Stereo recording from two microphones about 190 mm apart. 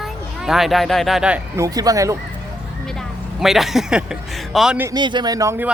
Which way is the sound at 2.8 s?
Centre (ahead or behind).